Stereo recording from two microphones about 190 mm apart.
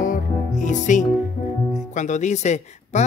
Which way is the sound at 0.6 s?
40° left (ahead or behind).